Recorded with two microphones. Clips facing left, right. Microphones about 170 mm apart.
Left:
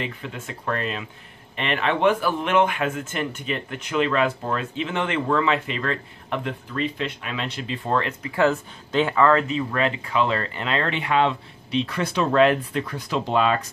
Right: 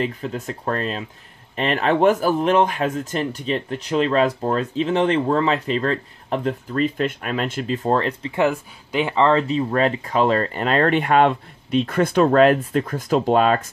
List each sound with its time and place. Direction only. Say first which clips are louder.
0.0 s speech: right 7 dB; 40° right (ahead or behind)